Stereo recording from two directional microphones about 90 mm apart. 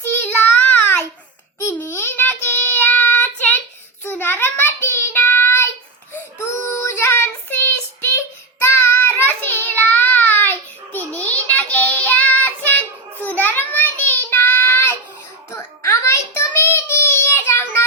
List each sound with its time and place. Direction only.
0.2 s child singing: 20° left (ahead or behind)
16.8 s child singing: 15° right (ahead or behind)
17.3 s child singing: 25° left (ahead or behind)